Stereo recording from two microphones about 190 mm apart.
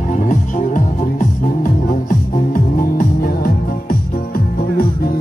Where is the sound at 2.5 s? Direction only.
50° left (ahead or behind).